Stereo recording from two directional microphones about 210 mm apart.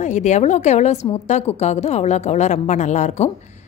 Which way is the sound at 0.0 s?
35° left (ahead or behind).